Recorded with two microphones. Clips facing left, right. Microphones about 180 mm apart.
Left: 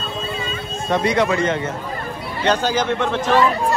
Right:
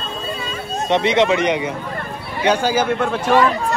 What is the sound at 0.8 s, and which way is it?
A man's voice, 20° right (ahead or behind).